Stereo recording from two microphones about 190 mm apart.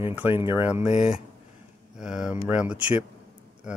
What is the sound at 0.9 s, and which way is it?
Speech, 35° left (ahead or behind).